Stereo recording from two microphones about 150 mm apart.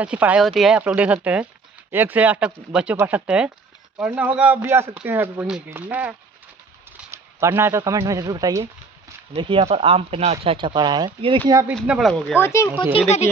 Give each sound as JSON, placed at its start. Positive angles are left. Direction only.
{"t": 0.0, "sound": "speech", "side_deg": -10}
{"t": 9.3, "sound": "speech", "side_deg": -35}
{"t": 12.0, "sound": "speech", "side_deg": 0}
{"t": 12.4, "sound": "speech", "side_deg": 15}